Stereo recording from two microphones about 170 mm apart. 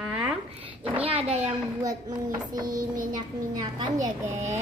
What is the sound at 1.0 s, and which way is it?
Speech, 35° right (ahead or behind).